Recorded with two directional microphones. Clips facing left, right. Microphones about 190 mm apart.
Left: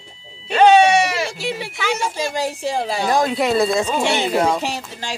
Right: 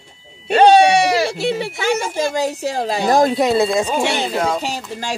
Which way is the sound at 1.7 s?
50° right (ahead or behind).